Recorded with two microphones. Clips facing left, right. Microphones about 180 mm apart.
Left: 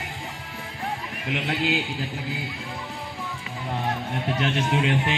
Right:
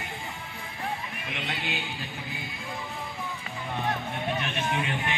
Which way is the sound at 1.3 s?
85° left.